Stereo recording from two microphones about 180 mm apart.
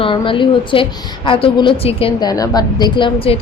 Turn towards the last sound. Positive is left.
turn(degrees=30)  # may be behind; listen again after turning